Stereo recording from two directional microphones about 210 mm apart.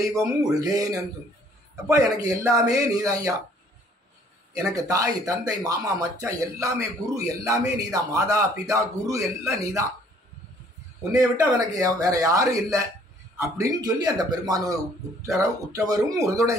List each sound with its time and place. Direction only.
0.0 s speech: 15° right (ahead or behind)
1.9 s speech: 15° right (ahead or behind)
4.6 s speech: 15° right (ahead or behind)
11.1 s speech: 15° right (ahead or behind)